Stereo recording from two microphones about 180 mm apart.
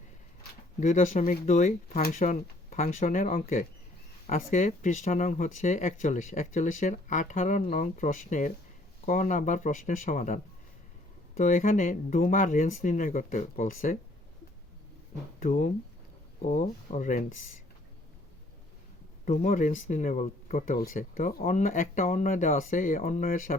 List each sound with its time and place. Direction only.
0.8 s speech: 40° left (ahead or behind)
15.4 s speech: 45° left (ahead or behind)
19.2 s speech: 40° left (ahead or behind)